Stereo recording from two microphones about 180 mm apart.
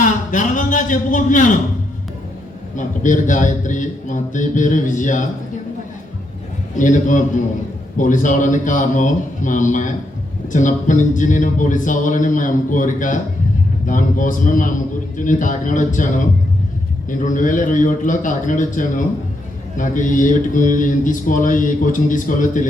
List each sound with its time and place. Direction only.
0.0 s a man's voice: 45° left (ahead or behind)
2.7 s speech: 45° left (ahead or behind)
6.7 s speech: 45° left (ahead or behind)